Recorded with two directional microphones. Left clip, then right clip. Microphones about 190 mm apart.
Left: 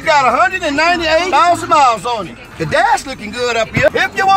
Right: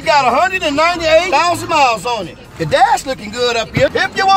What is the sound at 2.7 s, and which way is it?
Speech, 60° right (ahead or behind).